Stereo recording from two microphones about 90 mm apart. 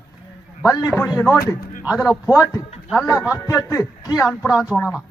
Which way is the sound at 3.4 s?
35° left (ahead or behind).